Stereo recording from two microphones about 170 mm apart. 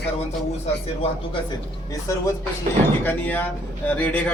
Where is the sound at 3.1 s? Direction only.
10° left (ahead or behind).